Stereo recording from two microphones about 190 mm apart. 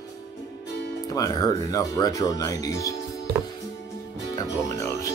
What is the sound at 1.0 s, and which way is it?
Music, 20° left (ahead or behind).